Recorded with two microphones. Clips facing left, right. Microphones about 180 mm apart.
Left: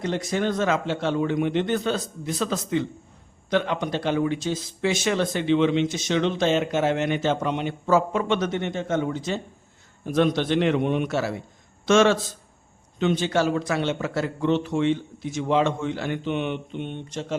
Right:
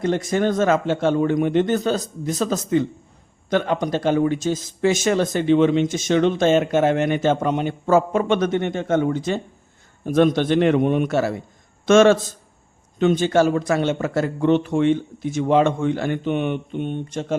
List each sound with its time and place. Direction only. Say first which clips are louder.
0.0 s speech: right 5 dB; 50° right (ahead or behind)